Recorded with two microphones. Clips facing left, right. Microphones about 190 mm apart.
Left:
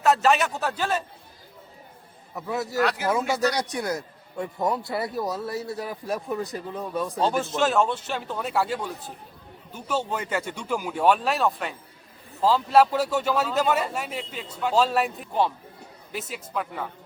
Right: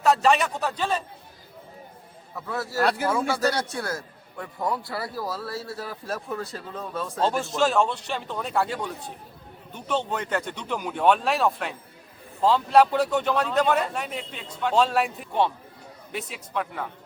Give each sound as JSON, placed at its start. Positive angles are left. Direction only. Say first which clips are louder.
{"t": 0.0, "sound": "a man's voice", "louder": "even", "side_deg": 0}
{"t": 2.3, "sound": "a man's voice", "louder": "left 2 dB", "side_deg": 20}
{"t": 7.2, "sound": "a man's voice", "louder": "right 1 dB", "side_deg": 0}